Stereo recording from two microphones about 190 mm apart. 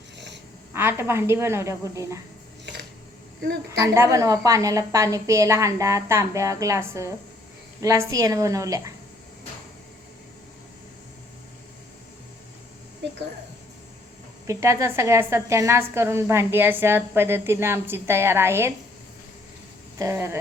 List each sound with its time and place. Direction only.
0.7 s a woman's voice: 10° right (ahead or behind)
3.7 s a woman's voice: 15° right (ahead or behind)
14.4 s a woman's voice: 15° right (ahead or behind)
20.0 s a woman's voice: 15° right (ahead or behind)